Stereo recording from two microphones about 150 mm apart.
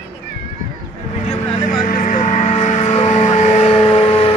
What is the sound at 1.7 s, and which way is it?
Music, 65° left (ahead or behind).